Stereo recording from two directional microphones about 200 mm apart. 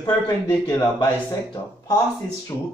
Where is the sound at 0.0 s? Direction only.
15° left (ahead or behind).